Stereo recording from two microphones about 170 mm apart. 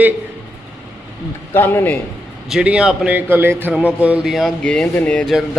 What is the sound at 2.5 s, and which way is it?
A man's voice, 5° right (ahead or behind).